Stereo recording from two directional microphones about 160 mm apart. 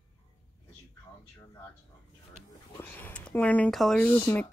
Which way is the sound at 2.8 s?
10° left (ahead or behind).